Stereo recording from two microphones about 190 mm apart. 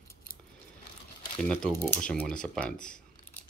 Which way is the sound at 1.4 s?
10° left (ahead or behind).